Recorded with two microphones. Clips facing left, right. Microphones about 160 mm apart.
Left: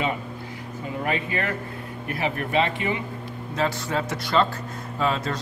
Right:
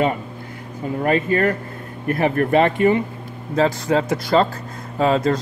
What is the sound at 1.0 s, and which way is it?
Speech, 45° right (ahead or behind).